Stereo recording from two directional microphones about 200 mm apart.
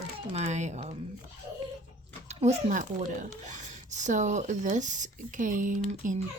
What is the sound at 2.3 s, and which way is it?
Speech, 35° right (ahead or behind).